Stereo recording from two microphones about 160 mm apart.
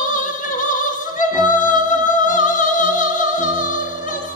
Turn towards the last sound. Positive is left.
turn(degrees=55)  # may be behind; listen again after turning